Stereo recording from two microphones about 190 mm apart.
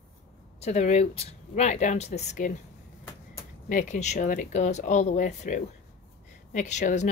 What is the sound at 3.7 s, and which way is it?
Speech, 40° left (ahead or behind).